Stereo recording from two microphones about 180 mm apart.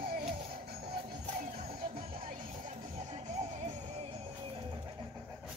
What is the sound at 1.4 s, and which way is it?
Music, 40° right (ahead or behind).